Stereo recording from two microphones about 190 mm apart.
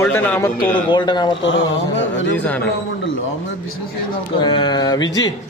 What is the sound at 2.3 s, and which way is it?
Speech, 5° left (ahead or behind).